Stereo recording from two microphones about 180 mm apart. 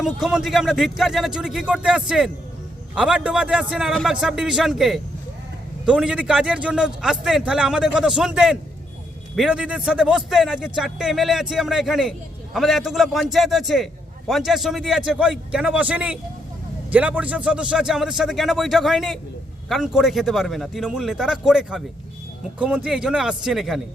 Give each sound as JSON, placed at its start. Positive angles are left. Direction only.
{"t": 0.0, "sound": "a man's voice", "side_deg": 0}